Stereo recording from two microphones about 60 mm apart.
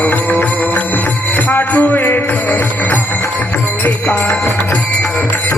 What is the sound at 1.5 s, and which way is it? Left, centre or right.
Music, left.